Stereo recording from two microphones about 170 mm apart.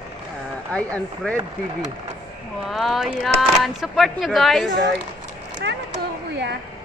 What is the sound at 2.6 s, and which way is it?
Speech, centre (ahead or behind).